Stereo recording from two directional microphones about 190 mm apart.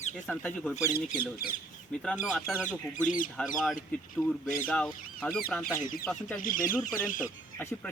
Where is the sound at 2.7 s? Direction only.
45° left (ahead or behind).